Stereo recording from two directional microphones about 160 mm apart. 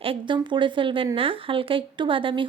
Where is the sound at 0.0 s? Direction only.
30° right (ahead or behind).